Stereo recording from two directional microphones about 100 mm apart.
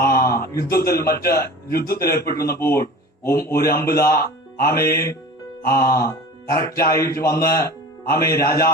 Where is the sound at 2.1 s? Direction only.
30° left (ahead or behind).